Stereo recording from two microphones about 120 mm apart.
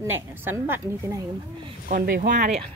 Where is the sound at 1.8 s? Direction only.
90° right.